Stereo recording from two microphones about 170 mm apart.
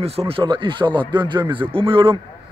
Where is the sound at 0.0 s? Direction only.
35° right (ahead or behind).